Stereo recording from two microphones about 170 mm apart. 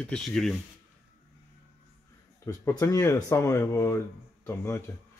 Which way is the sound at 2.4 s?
20° left (ahead or behind).